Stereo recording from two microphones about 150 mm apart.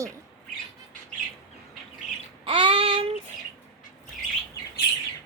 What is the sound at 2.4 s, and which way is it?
Child singing, 35° right (ahead or behind).